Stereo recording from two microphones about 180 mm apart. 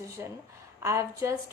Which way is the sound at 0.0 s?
15° right (ahead or behind).